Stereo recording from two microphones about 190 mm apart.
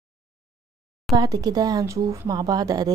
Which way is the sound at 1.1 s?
20° right (ahead or behind).